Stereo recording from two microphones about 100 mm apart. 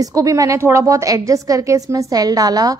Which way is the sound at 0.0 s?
35° right (ahead or behind).